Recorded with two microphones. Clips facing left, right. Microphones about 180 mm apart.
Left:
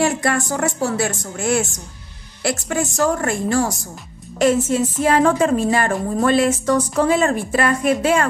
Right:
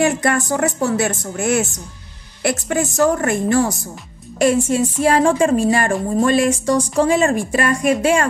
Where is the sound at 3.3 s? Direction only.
20° right (ahead or behind).